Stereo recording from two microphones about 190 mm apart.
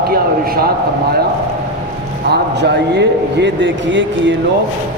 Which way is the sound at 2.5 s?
65° right (ahead or behind).